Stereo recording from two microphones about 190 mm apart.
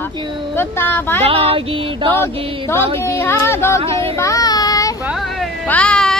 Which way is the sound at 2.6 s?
15° left (ahead or behind).